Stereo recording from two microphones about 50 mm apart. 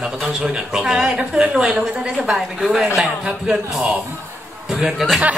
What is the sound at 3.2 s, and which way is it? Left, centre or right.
Speech, right.